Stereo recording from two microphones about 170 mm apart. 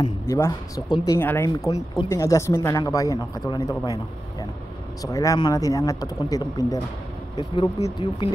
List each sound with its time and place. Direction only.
0.0 s speech: 20° left (ahead or behind)